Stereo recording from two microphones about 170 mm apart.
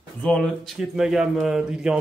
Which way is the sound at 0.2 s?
Centre (ahead or behind).